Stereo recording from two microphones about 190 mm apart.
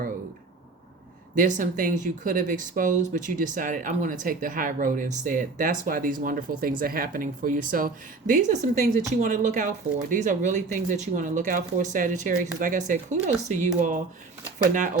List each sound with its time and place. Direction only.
1.4 s speech: 40° right (ahead or behind)